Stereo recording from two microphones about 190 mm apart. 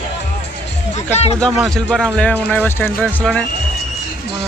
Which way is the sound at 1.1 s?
35° left (ahead or behind).